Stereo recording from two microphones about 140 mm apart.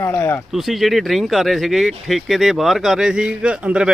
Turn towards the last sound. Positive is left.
turn(degrees=-5)  # may be behind; listen again after turning